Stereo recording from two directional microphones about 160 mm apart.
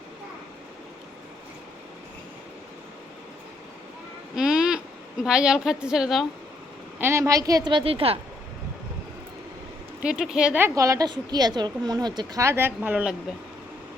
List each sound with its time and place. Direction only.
4.4 s a sound: 5° right (ahead or behind)
5.2 s a woman's voice: 5° right (ahead or behind)
7.0 s speech: 20° right (ahead or behind); by 8.2 s 35° right (ahead or behind)
10.0 s a woman's voice: 5° right (ahead or behind)
10.8 s speech: 20° right (ahead or behind)